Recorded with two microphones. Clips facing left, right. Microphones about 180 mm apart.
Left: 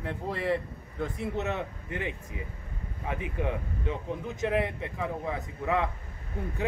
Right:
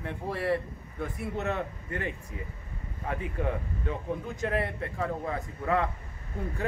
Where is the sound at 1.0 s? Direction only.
20° left (ahead or behind).